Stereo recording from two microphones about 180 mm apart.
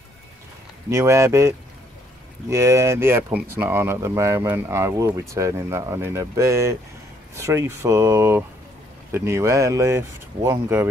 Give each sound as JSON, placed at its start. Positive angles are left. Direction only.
{"t": 0.8, "sound": "speech", "side_deg": -15}
{"t": 2.5, "sound": "speech", "side_deg": -15}